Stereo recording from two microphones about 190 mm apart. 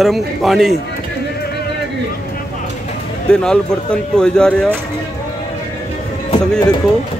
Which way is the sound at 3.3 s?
5° left (ahead or behind).